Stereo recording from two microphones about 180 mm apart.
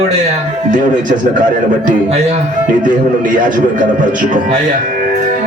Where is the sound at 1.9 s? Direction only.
35° right (ahead or behind).